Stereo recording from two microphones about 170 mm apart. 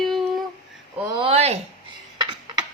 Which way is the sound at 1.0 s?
30° right (ahead or behind).